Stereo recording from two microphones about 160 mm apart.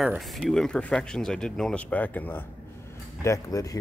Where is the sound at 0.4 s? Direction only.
Centre (ahead or behind).